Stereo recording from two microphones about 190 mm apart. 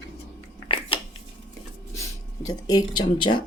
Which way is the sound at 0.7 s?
25° left (ahead or behind).